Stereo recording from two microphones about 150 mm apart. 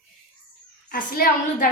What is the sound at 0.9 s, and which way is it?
Speech, 65° left (ahead or behind).